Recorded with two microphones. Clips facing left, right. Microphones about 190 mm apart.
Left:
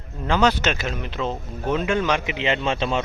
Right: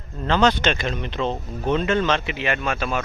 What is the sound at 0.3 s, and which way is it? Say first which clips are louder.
A man's voice: right 1 dB; 10° left (ahead or behind).